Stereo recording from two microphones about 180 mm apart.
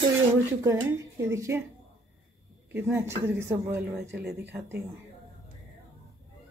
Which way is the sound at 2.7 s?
15° right (ahead or behind).